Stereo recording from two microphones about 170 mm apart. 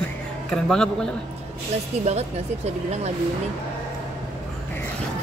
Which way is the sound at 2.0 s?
40° right (ahead or behind).